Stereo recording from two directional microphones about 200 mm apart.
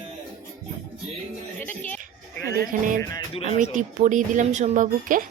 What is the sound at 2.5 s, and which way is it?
Speech, 45° right (ahead or behind).